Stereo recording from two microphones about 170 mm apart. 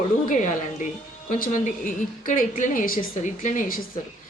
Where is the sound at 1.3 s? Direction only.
50° left (ahead or behind).